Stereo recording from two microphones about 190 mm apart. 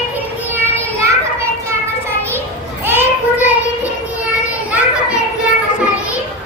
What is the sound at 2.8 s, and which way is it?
Children playing, 10° right (ahead or behind).